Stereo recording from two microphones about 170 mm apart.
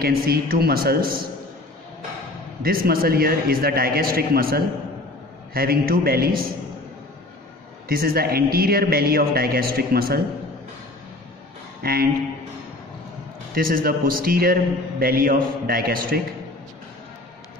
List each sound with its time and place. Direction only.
0.0 s a man's voice: 60° right (ahead or behind)
2.6 s a man's voice: 60° right (ahead or behind)
7.9 s a man's voice: 60° right (ahead or behind)
11.8 s a man's voice: 60° right (ahead or behind)
13.6 s a man's voice: 60° right (ahead or behind)